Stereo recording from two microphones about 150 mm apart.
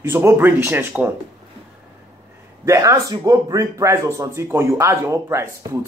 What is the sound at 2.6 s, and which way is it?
Speech, 20° right (ahead or behind).